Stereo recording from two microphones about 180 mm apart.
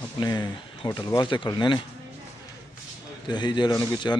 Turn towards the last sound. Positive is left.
turn(degrees=20)  # may be behind; listen again after turning